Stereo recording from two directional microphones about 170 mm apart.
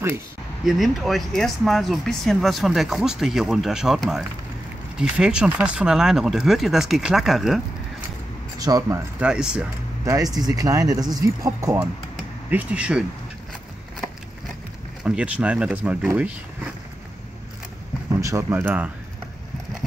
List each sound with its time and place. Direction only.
0.7 s speech: centre (ahead or behind)
8.5 s speech: 20° right (ahead or behind)
9.2 s speech: 5° right (ahead or behind)
10.0 s speech: 20° right (ahead or behind)
12.4 s speech: 10° right (ahead or behind)
15.0 s speech: 5° right (ahead or behind)
18.2 s speech: 15° right (ahead or behind)